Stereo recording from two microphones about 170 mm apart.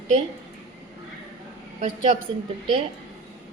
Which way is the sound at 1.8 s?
45° right (ahead or behind).